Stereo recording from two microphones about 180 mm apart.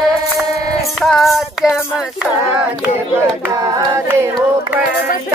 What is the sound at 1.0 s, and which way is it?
Child singing, centre (ahead or behind).